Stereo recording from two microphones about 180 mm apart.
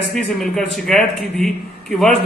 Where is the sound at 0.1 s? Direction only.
5° left (ahead or behind).